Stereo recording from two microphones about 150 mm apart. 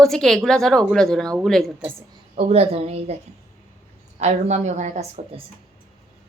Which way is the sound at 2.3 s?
40° right (ahead or behind).